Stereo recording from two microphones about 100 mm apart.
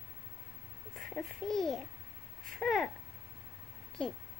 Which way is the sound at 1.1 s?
5° left (ahead or behind).